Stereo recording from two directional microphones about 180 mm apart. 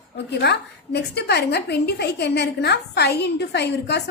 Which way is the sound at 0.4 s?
65° left (ahead or behind).